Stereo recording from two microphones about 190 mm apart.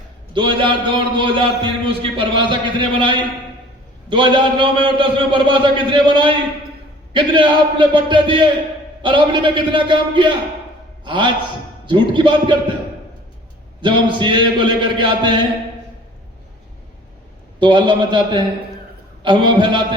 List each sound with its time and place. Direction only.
0.3 s a man's voice: 25° right (ahead or behind)
13.8 s a man's voice: 25° right (ahead or behind)
17.6 s a man's voice: 25° right (ahead or behind)